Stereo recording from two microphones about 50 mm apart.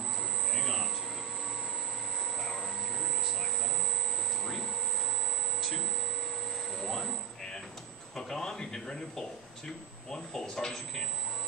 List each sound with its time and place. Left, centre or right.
0.6 s a sound: centre
6.8 s music: centre
8.2 s speech: centre